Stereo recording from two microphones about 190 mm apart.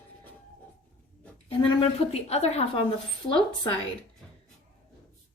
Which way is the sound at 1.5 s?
30° left (ahead or behind).